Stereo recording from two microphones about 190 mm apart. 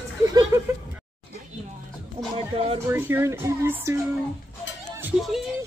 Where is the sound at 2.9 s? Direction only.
10° right (ahead or behind).